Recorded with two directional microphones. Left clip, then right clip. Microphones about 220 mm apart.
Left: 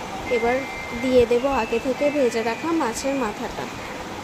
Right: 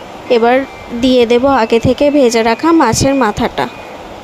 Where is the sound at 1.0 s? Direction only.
40° right (ahead or behind).